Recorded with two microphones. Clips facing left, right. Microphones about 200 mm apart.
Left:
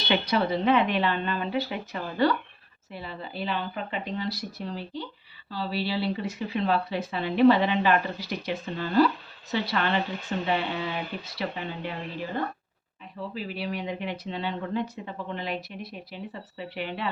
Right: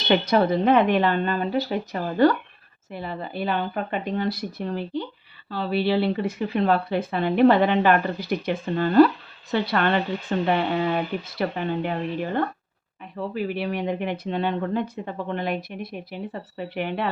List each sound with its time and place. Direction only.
0.1 s a woman's voice: 45° right (ahead or behind)